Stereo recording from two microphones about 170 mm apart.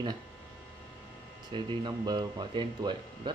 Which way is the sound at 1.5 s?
25° right (ahead or behind).